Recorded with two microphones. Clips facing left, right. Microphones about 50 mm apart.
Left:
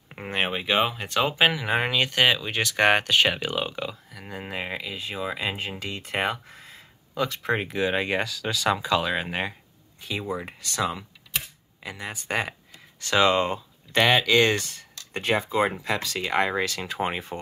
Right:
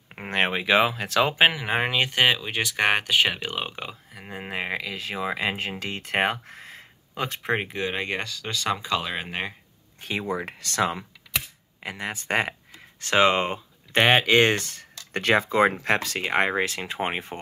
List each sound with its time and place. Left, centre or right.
0.3 s speech: right
1.5 s speech: right
3.5 s speech: right
4.5 s speech: right
7.7 s speech: centre
9.9 s speech: right
12.7 s speech: right
15.1 s speech: right